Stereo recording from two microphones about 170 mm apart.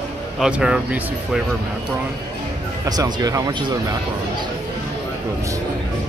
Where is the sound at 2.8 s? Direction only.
25° right (ahead or behind).